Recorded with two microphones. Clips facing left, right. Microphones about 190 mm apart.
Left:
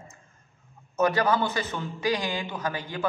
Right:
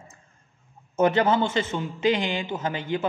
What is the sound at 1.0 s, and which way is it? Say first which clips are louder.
A man's voice: right 3 dB; 25° right (ahead or behind).